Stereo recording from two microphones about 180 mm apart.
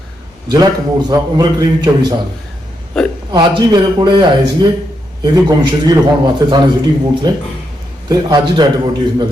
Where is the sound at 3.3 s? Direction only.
25° right (ahead or behind).